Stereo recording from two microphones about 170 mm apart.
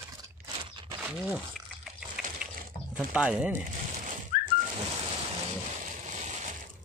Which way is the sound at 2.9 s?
5° right (ahead or behind).